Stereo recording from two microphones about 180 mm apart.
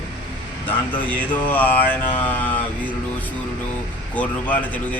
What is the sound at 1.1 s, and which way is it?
A man's voice, 10° left (ahead or behind).